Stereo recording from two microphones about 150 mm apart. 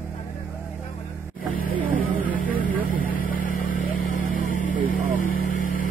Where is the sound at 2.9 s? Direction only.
70° left (ahead or behind).